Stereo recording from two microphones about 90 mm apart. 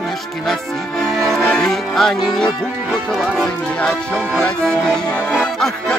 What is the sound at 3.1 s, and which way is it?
Speech, 5° left (ahead or behind).